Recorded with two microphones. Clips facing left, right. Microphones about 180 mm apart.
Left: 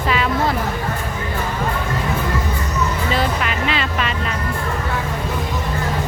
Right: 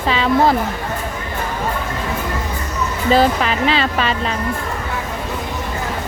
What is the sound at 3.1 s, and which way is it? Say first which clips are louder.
Music: right 9 dB; 30° right (ahead or behind).